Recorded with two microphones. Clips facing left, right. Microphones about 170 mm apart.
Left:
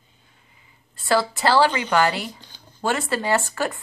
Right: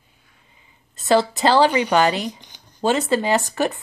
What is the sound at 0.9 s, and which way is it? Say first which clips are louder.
A child's voice: right 4 dB; 20° right (ahead or behind).